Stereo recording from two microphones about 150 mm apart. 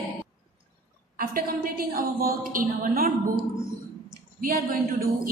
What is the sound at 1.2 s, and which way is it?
A woman's voice, 80° right.